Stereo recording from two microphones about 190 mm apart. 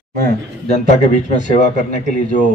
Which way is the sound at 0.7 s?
40° left (ahead or behind).